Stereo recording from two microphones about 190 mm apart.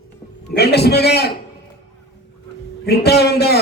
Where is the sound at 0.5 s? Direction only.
60° left (ahead or behind).